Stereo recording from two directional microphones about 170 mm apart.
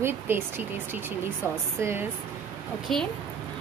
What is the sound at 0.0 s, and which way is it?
Speech, 10° right (ahead or behind).